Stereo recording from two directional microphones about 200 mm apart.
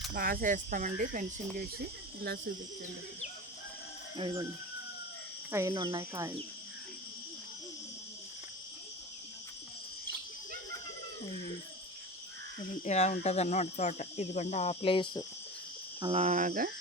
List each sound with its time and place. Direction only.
0.1 s speech: 45° right (ahead or behind)
4.2 s speech: 25° right (ahead or behind)
5.5 s speech: 15° right (ahead or behind)
12.8 s cricket: 35° left (ahead or behind)
16.0 s cricket: 25° right (ahead or behind)
16.2 s speech: 35° right (ahead or behind)